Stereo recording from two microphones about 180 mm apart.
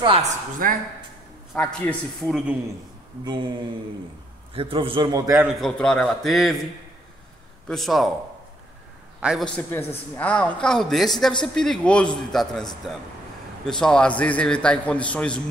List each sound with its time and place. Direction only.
0.0 s a woman's voice: 30° right (ahead or behind)
0.6 s speech: 50° right (ahead or behind)
1.5 s a man's voice: 5° left (ahead or behind)
3.3 s a man's voice: 25° right (ahead or behind)
5.6 s a man's voice: centre (ahead or behind)
7.6 s a man's voice: centre (ahead or behind)
9.2 s a man's voice: 5° right (ahead or behind)
9.6 s a man's voice: 15° left (ahead or behind)